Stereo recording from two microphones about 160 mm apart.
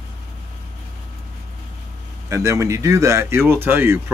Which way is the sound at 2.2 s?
20° right (ahead or behind).